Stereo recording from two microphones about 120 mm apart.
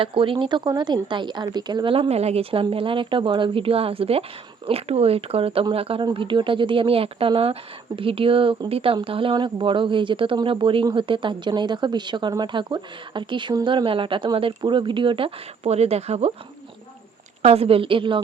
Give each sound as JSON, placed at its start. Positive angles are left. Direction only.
{"t": 0.0, "sound": "speech", "side_deg": -45}
{"t": 17.4, "sound": "speech", "side_deg": -55}